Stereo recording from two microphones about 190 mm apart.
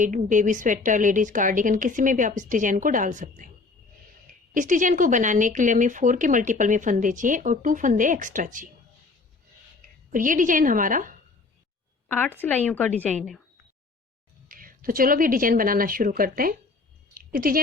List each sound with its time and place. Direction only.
0.0 s speech: 40° right (ahead or behind)
4.5 s speech: 40° right (ahead or behind)
10.1 s speech: 45° right (ahead or behind)
12.0 s a woman's voice: 10° left (ahead or behind)
14.4 s a woman's voice: 45° right (ahead or behind)
17.2 s a sound: 50° right (ahead or behind)